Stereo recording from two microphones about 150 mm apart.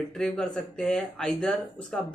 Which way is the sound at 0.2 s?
5° left (ahead or behind).